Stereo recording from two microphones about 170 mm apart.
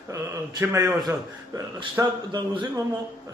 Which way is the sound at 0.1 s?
20° right (ahead or behind).